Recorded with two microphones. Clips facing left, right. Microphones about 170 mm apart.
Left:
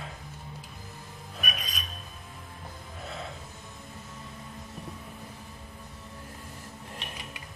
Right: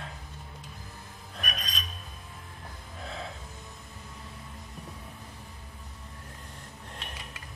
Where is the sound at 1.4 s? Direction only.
5° left (ahead or behind).